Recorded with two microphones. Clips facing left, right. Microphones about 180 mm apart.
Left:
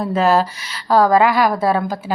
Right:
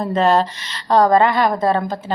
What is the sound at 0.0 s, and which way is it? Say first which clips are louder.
A woman's voice: even; 5° left (ahead or behind).